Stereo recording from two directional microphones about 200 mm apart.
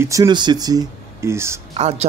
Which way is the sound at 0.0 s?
15° right (ahead or behind).